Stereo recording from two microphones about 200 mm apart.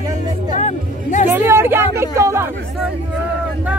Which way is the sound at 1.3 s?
10° right (ahead or behind).